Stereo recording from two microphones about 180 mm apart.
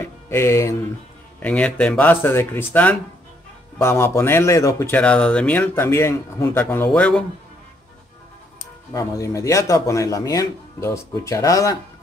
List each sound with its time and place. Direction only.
0.0 s speech: 15° left (ahead or behind)
8.9 s speech: 20° left (ahead or behind)